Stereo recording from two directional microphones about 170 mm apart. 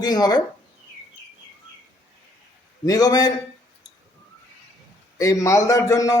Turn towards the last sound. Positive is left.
turn(degrees=20)  # may be behind; listen again after turning